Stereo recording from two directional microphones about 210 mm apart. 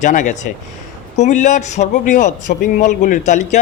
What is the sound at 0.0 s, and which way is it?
A man's voice, 35° left (ahead or behind).